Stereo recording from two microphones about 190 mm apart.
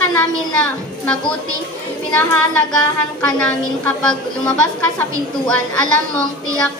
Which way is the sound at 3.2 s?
5° left (ahead or behind).